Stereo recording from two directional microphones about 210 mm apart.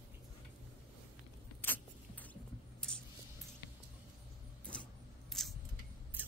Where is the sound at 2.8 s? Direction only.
5° left (ahead or behind).